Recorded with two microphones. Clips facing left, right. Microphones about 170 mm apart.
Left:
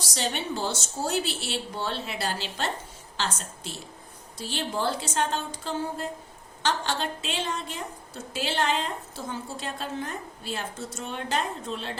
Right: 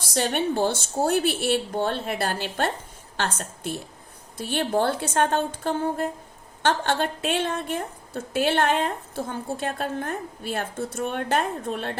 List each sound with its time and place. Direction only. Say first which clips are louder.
0.0 s a woman's voice: right 6 dB; 55° right (ahead or behind)